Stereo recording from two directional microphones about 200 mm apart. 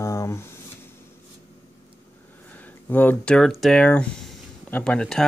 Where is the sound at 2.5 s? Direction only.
10° left (ahead or behind).